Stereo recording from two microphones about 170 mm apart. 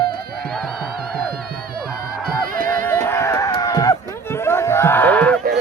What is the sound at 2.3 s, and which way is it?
Music, 55° right (ahead or behind).